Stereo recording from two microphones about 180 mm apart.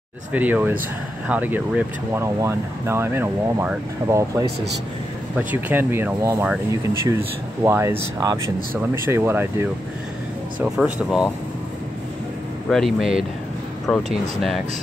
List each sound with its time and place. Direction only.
0.3 s speech: 10° right (ahead or behind)
5.5 s speech: 10° right (ahead or behind)
12.6 s speech: centre (ahead or behind)